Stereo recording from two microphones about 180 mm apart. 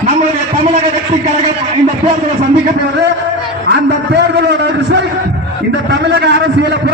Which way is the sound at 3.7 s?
70° right (ahead or behind).